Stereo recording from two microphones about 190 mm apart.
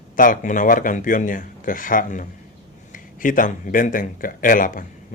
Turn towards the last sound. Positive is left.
turn(degrees=45)  # may be behind; listen again after turning